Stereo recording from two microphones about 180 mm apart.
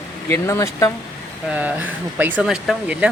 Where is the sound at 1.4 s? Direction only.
10° right (ahead or behind).